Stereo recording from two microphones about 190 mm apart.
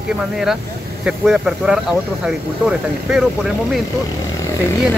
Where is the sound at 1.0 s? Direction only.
5° right (ahead or behind).